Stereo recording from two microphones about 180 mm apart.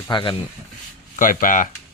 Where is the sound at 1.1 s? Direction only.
50° left (ahead or behind).